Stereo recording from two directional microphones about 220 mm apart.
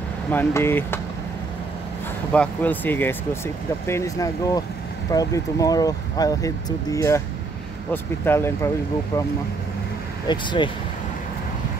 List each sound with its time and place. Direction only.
0.3 s speech: 10° left (ahead or behind)
2.3 s speech: 5° left (ahead or behind)
10.2 s speech: 20° left (ahead or behind)